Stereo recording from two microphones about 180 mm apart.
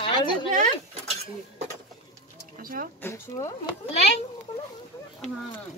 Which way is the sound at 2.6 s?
55° right (ahead or behind).